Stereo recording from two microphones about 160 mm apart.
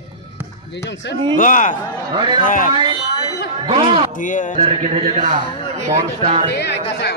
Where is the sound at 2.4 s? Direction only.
55° left (ahead or behind).